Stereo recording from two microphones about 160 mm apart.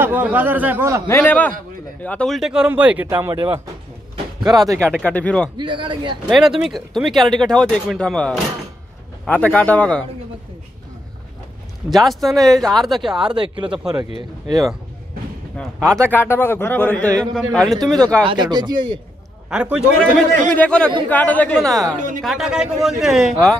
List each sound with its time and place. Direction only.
0.0 s speech: 10° right (ahead or behind)
1.0 s speech: 15° left (ahead or behind); by 4.7 s 25° right (ahead or behind)
4.7 s speech: 5° left (ahead or behind)
5.6 s speech: 30° right (ahead or behind)
6.2 s speech: centre (ahead or behind)
11.9 s speech: centre (ahead or behind)
13.3 s speech: 30° right (ahead or behind)
15.8 s speech: 15° right (ahead or behind)
16.1 s speech: 15° left (ahead or behind)
18.2 s speech: 30° right (ahead or behind)
19.5 s speech: 5° right (ahead or behind)
20.5 s speech: 10° left (ahead or behind)